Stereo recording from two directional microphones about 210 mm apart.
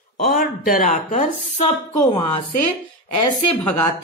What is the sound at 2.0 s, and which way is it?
Speech, 25° left (ahead or behind).